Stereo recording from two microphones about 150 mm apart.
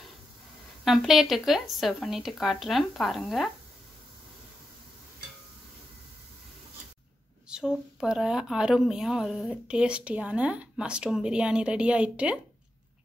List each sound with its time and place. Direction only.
0.8 s speech: centre (ahead or behind)
7.4 s speech: 5° right (ahead or behind)